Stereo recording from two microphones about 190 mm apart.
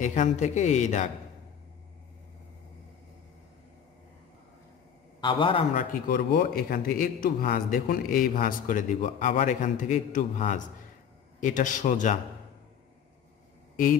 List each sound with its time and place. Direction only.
0.0 s speech: 40° left (ahead or behind)
5.2 s a man's voice: 25° left (ahead or behind)
5.8 s a man's voice: 50° left (ahead or behind)